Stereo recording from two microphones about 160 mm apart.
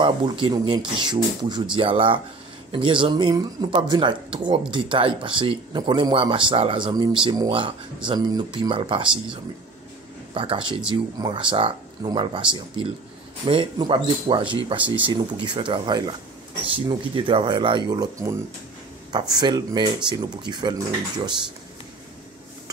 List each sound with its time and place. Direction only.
0.0 s speech: 30° right (ahead or behind)
10.3 s speech: 35° right (ahead or behind)